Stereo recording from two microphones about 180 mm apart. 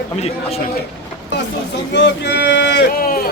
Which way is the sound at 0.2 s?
35° left (ahead or behind).